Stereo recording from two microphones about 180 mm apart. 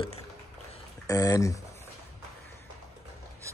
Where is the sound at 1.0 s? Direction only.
20° left (ahead or behind).